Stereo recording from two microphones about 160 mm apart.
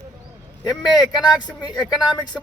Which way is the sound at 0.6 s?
25° left (ahead or behind).